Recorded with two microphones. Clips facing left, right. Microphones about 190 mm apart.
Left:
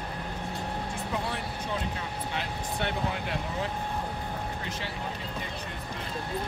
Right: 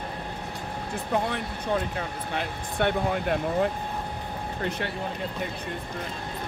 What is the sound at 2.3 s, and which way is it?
Speech, 50° right (ahead or behind).